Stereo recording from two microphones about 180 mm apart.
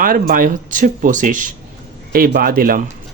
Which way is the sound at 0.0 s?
50° right (ahead or behind).